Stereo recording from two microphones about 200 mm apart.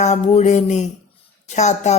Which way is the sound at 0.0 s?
35° left (ahead or behind).